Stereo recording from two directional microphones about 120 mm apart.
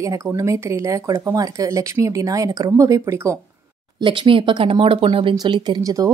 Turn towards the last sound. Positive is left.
turn(degrees=-30)  # may be behind; listen again after turning